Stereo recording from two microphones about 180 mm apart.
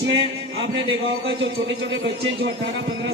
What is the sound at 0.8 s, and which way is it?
A man's voice, 80° right.